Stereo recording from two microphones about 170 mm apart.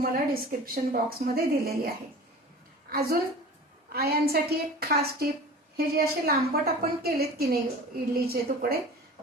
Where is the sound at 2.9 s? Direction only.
65° right (ahead or behind).